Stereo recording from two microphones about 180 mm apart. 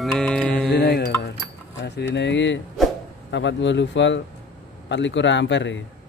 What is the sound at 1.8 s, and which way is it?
Speech, 75° left (ahead or behind).